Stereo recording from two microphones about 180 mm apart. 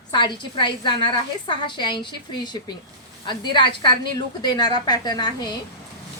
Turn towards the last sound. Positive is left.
turn(degrees=25)  # may be behind; listen again after turning